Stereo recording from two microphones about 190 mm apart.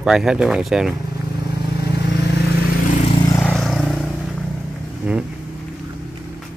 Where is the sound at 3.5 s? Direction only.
Centre (ahead or behind).